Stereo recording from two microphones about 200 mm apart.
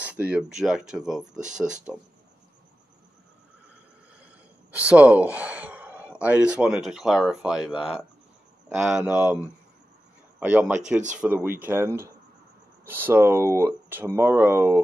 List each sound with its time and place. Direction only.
0.0 s speech: 5° right (ahead or behind)
1.3 s speech: 40° right (ahead or behind)
1.6 s speech: 5° right (ahead or behind)
4.2 s speech: 5° right (ahead or behind)